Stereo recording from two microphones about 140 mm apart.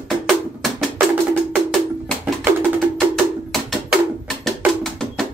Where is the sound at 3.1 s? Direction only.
Centre (ahead or behind).